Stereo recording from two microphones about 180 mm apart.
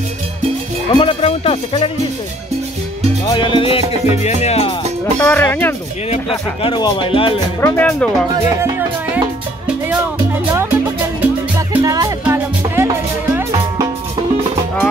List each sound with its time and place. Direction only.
0.8 s music: 30° left (ahead or behind)
3.3 s music: 25° left (ahead or behind)
5.2 s speech: 10° left (ahead or behind)
6.0 s speech: 35° left (ahead or behind)
7.6 s speech: 10° left (ahead or behind)
8.5 s music: 15° right (ahead or behind)
10.5 s music: 15° right (ahead or behind)